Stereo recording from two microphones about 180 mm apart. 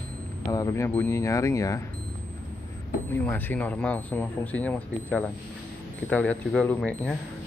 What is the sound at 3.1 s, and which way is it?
Speech, 10° left (ahead or behind).